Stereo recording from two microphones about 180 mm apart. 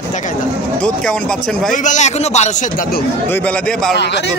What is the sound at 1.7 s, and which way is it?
Speech, 45° left (ahead or behind).